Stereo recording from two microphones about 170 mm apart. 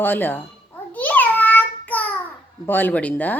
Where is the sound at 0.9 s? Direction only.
10° left (ahead or behind).